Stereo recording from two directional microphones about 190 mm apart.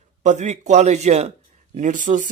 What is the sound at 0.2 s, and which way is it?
Speech, 40° right (ahead or behind).